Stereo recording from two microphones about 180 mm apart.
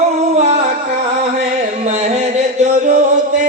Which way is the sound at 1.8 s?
40° right (ahead or behind).